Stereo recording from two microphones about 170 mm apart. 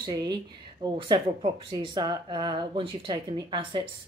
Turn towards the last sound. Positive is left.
turn(degrees=-30)  # may be behind; listen again after turning